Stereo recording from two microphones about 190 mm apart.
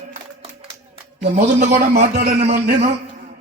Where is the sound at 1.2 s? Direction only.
35° right (ahead or behind).